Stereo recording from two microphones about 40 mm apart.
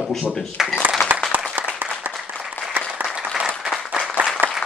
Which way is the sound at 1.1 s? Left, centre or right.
Right.